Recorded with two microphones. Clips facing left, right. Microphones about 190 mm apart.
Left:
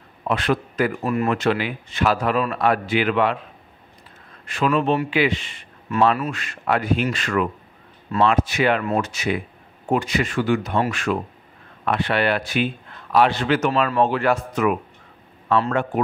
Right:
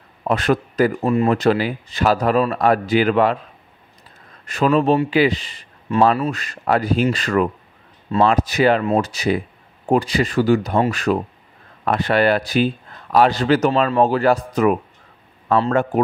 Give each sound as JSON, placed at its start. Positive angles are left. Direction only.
{"t": 0.2, "sound": "speech", "side_deg": -40}
{"t": 4.5, "sound": "a man's voice", "side_deg": -40}